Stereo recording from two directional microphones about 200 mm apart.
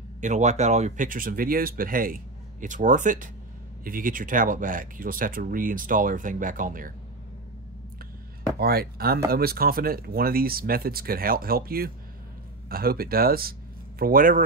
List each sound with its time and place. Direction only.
0.2 s speech: 35° right (ahead or behind)
8.5 s speech: 50° right (ahead or behind)